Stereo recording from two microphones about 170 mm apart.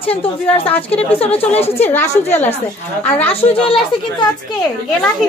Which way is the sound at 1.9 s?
10° left (ahead or behind).